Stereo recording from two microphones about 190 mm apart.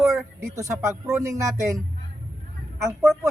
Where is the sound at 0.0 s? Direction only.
15° right (ahead or behind).